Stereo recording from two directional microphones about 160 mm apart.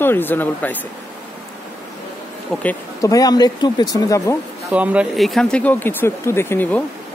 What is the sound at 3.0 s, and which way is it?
Speech, 20° left (ahead or behind).